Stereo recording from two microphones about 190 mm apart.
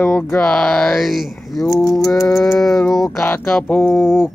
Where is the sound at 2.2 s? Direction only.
15° left (ahead or behind).